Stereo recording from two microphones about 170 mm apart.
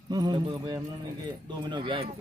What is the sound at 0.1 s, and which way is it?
Speech, 25° right (ahead or behind).